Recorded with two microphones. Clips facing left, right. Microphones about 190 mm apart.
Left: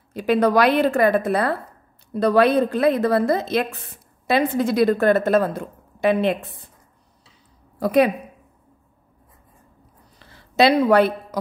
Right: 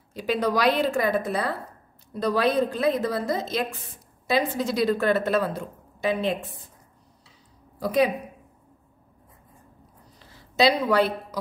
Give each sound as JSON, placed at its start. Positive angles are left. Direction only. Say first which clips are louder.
{"t": 0.1, "sound": "a woman's voice", "louder": "left 7 dB", "side_deg": 60}
{"t": 7.8, "sound": "a woman's voice", "louder": "left 5 dB", "side_deg": 60}
{"t": 10.1, "sound": "a sound", "louder": "left 5 dB", "side_deg": 60}